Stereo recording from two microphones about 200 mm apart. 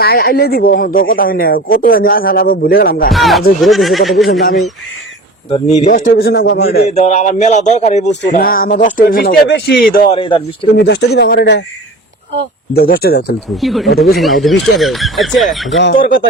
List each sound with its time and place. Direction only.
0.0 s speech: 50° left (ahead or behind)
3.1 s speech: centre (ahead or behind)
5.5 s speech: 30° left (ahead or behind)
6.1 s speech: 55° left (ahead or behind)
6.8 s speech: 35° left (ahead or behind)
9.5 s speech: 60° left (ahead or behind)
10.1 s speech: 25° left (ahead or behind)
10.8 s speech: 60° left (ahead or behind)
12.7 s speech: 50° left (ahead or behind)
13.6 s speech: centre (ahead or behind)
15.7 s speech: 65° left (ahead or behind)
16.0 s speech: 45° left (ahead or behind)